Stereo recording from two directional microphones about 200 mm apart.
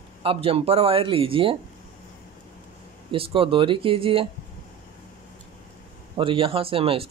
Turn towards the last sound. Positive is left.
turn(degrees=-30)  # may be behind; listen again after turning